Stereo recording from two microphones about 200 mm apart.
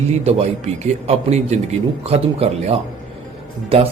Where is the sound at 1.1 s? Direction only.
35° right (ahead or behind).